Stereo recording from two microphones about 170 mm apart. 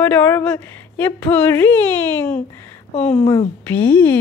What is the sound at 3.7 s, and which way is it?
Speech, 10° left (ahead or behind).